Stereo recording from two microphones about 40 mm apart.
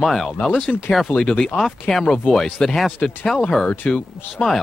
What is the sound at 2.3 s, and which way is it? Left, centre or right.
Speech, centre.